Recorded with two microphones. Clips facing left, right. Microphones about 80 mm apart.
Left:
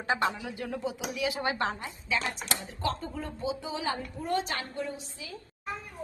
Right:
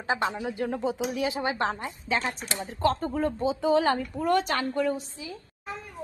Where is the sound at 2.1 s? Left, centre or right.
Right.